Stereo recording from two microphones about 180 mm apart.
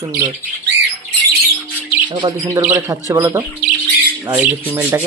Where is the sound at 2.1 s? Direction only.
30° right (ahead or behind).